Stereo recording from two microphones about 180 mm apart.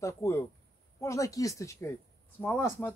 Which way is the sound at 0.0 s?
15° left (ahead or behind).